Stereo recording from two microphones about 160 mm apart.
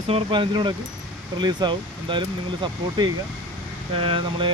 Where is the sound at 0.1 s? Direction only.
35° right (ahead or behind).